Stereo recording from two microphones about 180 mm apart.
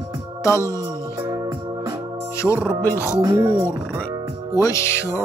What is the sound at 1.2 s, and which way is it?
Organ, 20° right (ahead or behind).